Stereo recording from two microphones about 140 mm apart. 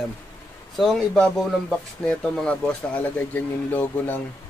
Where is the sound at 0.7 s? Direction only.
5° left (ahead or behind).